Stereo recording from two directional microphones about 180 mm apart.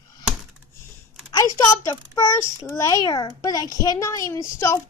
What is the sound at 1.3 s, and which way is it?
A child's voice, 20° left (ahead or behind).